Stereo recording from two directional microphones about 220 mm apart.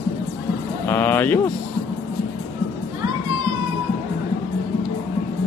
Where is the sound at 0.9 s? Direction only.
10° left (ahead or behind).